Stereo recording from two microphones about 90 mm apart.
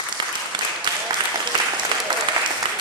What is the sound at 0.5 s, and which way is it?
Applause, 55° right (ahead or behind).